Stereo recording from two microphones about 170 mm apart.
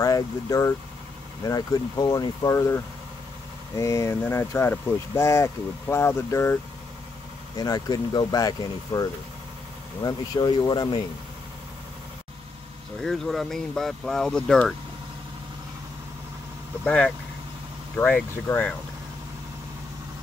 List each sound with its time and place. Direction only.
0.0 s speech: 20° left (ahead or behind)
13.0 s speech: centre (ahead or behind)
16.8 s speech: 5° left (ahead or behind)